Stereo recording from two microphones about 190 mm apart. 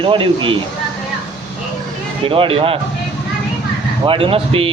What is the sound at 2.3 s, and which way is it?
Speech, 30° right (ahead or behind).